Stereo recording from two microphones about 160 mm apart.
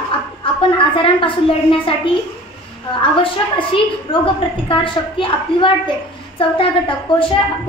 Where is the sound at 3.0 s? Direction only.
35° left (ahead or behind).